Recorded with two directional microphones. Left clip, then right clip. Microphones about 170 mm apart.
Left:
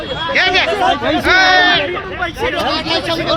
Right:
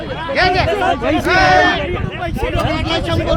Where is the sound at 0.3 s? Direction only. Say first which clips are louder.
Left 1 dB; centre (ahead or behind).